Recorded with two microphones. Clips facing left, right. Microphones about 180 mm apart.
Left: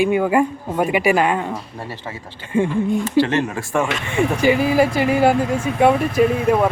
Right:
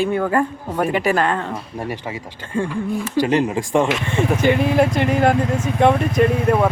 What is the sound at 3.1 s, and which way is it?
Speech, 15° right (ahead or behind).